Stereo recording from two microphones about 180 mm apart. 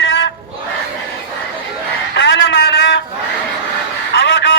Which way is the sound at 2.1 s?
75° left (ahead or behind).